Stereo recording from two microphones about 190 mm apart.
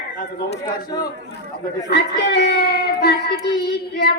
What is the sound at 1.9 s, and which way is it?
Child singing, 60° left (ahead or behind).